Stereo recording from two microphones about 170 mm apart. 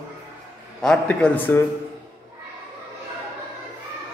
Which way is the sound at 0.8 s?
10° left (ahead or behind).